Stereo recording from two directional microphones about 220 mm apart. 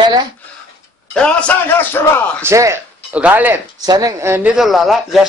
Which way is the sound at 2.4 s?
10° right (ahead or behind).